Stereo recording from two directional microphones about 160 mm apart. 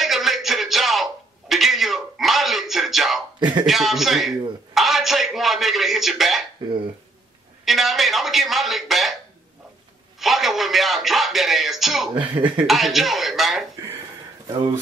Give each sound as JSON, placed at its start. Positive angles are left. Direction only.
{"t": 0.0, "sound": "a sound", "side_deg": 0}
{"t": 3.3, "sound": "speech", "side_deg": -30}
{"t": 3.6, "sound": "a man's voice", "side_deg": 0}
{"t": 7.6, "sound": "speech", "side_deg": 0}
{"t": 10.2, "sound": "speech", "side_deg": 0}
{"t": 12.1, "sound": "speech", "side_deg": -30}
{"t": 12.6, "sound": "speech", "side_deg": 0}